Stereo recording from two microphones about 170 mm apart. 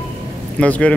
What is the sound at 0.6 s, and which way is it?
Speech, 5° left (ahead or behind).